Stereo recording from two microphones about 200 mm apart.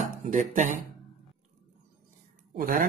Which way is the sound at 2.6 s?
45° right (ahead or behind).